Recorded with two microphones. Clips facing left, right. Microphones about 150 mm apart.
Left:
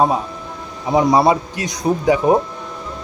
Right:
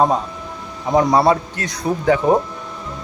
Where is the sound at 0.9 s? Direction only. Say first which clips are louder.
Left 1 dB; 10° left (ahead or behind).